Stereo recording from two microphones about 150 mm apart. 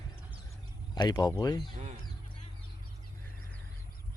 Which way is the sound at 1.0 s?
25° left (ahead or behind).